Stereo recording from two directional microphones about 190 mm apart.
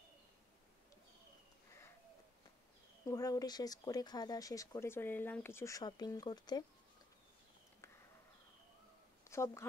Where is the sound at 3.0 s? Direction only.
20° left (ahead or behind).